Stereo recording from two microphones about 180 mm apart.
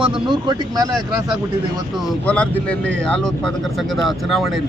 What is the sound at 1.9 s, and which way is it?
Speech, 5° left (ahead or behind).